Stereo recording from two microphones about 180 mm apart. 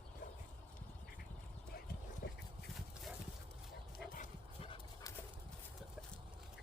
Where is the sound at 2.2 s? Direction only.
60° left (ahead or behind).